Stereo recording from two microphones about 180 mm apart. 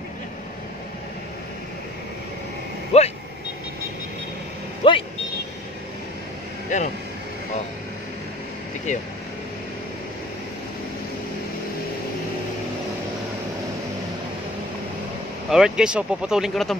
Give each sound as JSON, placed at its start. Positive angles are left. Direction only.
{"t": 2.9, "sound": "vehicle", "side_deg": 35}
{"t": 4.8, "sound": "a sound", "side_deg": 30}
{"t": 6.7, "sound": "vehicle", "side_deg": 45}
{"t": 15.5, "sound": "speech", "side_deg": -5}